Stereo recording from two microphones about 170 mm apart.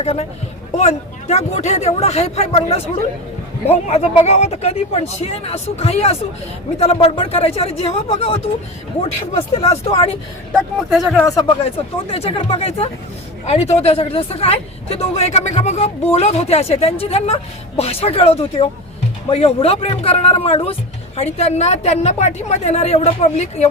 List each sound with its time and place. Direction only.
0.0 s speech: 40° left (ahead or behind)
9.6 s speech: 35° left (ahead or behind)
10.5 s speech: centre (ahead or behind)
11.2 s speech: 20° left (ahead or behind)
12.0 s speech: 35° left (ahead or behind)